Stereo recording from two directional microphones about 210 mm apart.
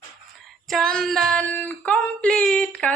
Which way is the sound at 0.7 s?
Centre (ahead or behind).